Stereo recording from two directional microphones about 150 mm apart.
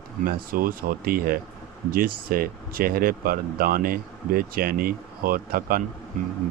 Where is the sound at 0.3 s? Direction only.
75° right (ahead or behind).